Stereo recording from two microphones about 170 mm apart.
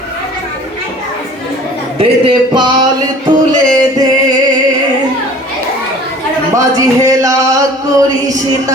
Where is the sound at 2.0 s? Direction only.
30° right (ahead or behind).